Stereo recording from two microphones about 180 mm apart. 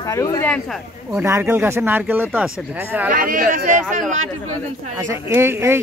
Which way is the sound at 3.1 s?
50° right (ahead or behind).